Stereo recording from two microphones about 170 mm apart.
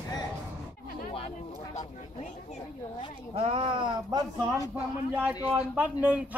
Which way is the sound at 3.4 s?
35° right (ahead or behind).